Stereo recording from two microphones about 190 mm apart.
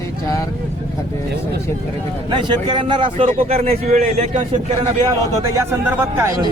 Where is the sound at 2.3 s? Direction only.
25° right (ahead or behind).